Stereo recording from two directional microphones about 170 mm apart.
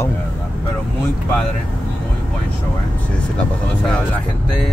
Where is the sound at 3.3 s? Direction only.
5° left (ahead or behind).